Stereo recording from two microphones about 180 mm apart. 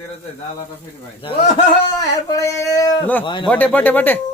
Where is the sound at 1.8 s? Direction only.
20° left (ahead or behind).